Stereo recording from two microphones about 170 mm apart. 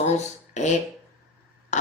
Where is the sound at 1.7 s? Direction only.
45° left (ahead or behind).